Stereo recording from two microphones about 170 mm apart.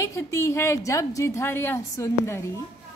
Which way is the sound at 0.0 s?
20° left (ahead or behind).